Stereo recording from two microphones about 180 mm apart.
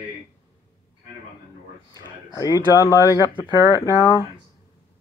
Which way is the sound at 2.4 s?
20° left (ahead or behind).